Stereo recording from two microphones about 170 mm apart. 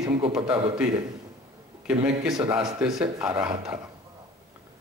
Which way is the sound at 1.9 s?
5° right (ahead or behind).